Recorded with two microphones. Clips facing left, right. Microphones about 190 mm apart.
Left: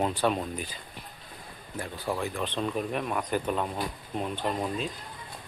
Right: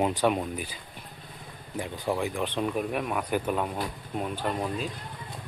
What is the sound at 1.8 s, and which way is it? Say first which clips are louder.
Speech: right 3 dB; 15° right (ahead or behind).